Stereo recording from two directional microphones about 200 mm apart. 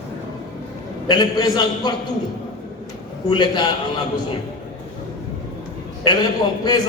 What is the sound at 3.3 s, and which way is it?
Speech, 20° left (ahead or behind).